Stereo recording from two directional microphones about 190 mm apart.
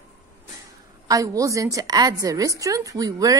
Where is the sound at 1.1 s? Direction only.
15° right (ahead or behind).